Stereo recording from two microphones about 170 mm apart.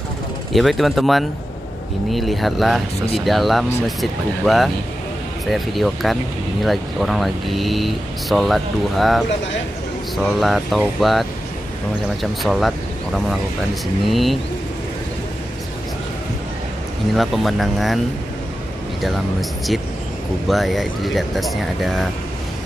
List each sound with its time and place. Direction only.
0.5 s speech: centre (ahead or behind)
17.1 s speech: centre (ahead or behind)
20.4 s speech: centre (ahead or behind)